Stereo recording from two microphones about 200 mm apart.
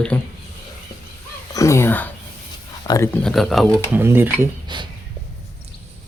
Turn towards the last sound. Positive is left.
turn(degrees=-25)  # may be behind; listen again after turning